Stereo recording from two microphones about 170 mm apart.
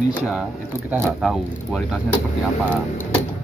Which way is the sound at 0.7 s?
15° right (ahead or behind).